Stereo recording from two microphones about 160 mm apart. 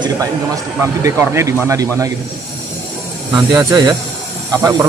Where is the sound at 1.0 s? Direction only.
15° right (ahead or behind).